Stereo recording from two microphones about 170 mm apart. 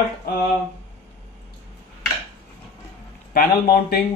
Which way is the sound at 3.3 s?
60° left (ahead or behind).